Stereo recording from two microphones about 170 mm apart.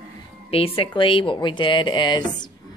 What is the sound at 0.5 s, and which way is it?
Speech, 35° left (ahead or behind).